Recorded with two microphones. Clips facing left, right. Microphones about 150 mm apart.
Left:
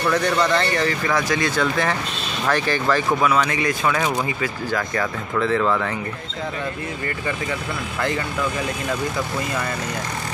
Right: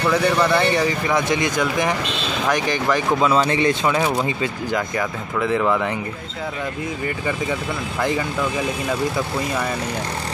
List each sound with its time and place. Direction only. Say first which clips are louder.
0.1 s speech: right 2 dB; 10° right (ahead or behind)